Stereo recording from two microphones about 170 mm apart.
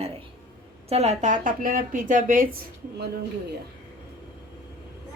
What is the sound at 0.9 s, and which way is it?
Speech, 40° right (ahead or behind).